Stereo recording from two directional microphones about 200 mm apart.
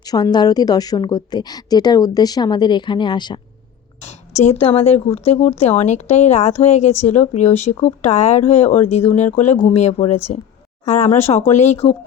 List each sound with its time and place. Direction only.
0.0 s a woman's voice: 20° left (ahead or behind)
4.0 s speech: 35° left (ahead or behind)